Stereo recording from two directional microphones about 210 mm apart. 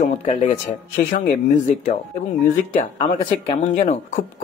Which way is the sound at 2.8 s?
25° left (ahead or behind).